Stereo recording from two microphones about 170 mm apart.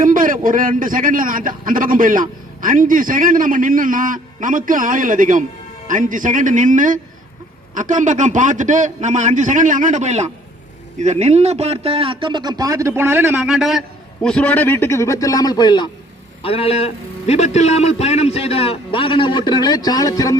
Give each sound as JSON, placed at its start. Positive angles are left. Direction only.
{"t": 0.0, "sound": "a man's voice", "side_deg": -50}
{"t": 16.4, "sound": "a man's voice", "side_deg": 35}